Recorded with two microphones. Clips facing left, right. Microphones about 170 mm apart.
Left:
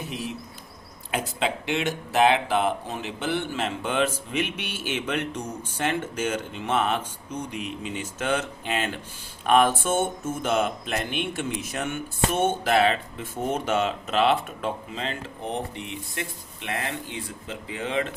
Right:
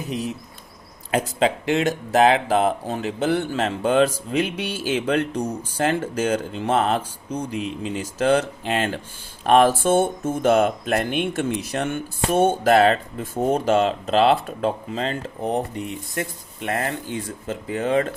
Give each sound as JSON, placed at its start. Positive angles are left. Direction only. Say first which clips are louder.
{"t": 1.1, "sound": "speech", "louder": "right 6 dB", "side_deg": -40}
{"t": 10.4, "sound": "speech", "louder": "right 7 dB", "side_deg": -50}